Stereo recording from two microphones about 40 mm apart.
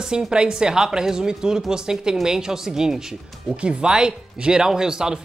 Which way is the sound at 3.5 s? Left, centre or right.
Right.